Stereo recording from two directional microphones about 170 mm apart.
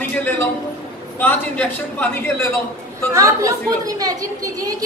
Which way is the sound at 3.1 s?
20° right (ahead or behind).